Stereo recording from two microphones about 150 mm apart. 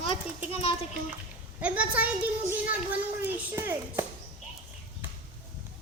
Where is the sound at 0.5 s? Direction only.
40° left (ahead or behind).